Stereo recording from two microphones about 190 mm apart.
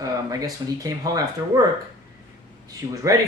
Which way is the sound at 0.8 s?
20° right (ahead or behind).